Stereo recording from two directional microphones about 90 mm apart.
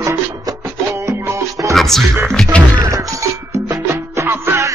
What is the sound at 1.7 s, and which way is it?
Music, 5° left (ahead or behind).